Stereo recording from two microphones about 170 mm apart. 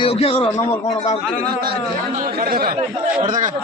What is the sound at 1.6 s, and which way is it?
Speech, 60° right (ahead or behind).